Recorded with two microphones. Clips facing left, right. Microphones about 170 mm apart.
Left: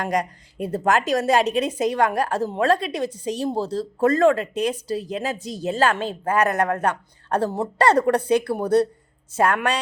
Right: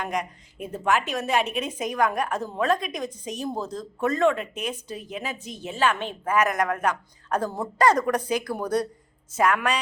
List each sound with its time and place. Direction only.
0.1 s speech: 35° left (ahead or behind)